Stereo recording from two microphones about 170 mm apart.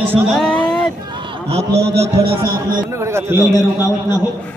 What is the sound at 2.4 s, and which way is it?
A man's voice, 15° right (ahead or behind).